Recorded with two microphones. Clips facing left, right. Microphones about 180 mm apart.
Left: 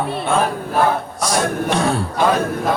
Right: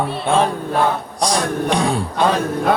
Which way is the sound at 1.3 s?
15° right (ahead or behind).